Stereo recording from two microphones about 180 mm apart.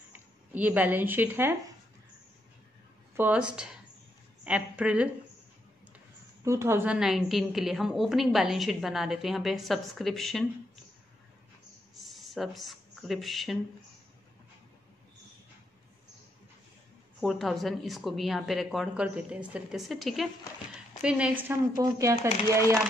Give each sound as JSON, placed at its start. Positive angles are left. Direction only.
{"t": 0.1, "sound": "speech", "side_deg": -10}
{"t": 3.2, "sound": "speech", "side_deg": -10}
{"t": 4.5, "sound": "speech", "side_deg": -5}
{"t": 6.4, "sound": "a woman's voice", "side_deg": -15}
{"t": 12.0, "sound": "speech", "side_deg": 0}
{"t": 17.2, "sound": "a woman's voice", "side_deg": 0}